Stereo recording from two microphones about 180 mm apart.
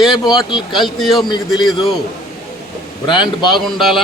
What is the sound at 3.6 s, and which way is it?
Speech, centre (ahead or behind).